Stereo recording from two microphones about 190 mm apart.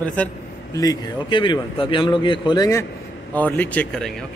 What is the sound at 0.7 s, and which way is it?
A man's voice, 20° left (ahead or behind).